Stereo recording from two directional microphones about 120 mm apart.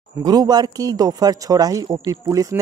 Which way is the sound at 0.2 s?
35° right (ahead or behind).